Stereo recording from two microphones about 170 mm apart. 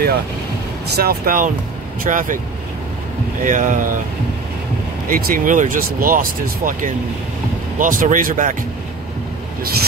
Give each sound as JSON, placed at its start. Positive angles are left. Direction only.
{"t": 0.9, "sound": "speech", "side_deg": -60}
{"t": 3.4, "sound": "speech", "side_deg": -50}
{"t": 5.0, "sound": "speech", "side_deg": -55}